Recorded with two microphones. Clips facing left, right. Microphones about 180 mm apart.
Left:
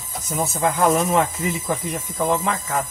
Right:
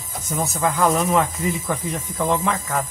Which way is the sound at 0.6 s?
25° left (ahead or behind).